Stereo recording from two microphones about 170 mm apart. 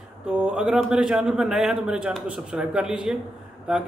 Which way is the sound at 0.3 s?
5° right (ahead or behind).